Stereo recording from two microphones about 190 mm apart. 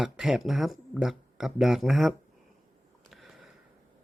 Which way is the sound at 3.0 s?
Centre (ahead or behind).